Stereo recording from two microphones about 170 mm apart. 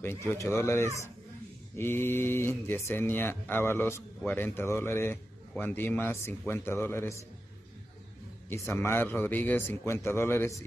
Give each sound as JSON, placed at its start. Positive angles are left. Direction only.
{"t": 0.0, "sound": "speech", "side_deg": 15}
{"t": 8.5, "sound": "speech", "side_deg": 15}